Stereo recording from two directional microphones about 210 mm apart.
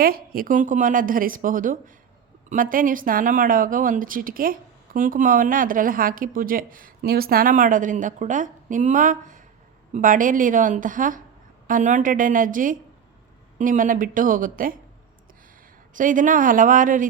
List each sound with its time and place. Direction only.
0.0 s speech: 45° right (ahead or behind)
16.0 s speech: 40° right (ahead or behind)